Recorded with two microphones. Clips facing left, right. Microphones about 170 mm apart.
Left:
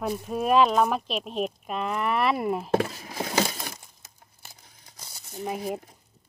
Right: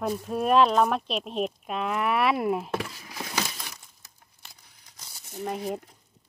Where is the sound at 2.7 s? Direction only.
45° left (ahead or behind).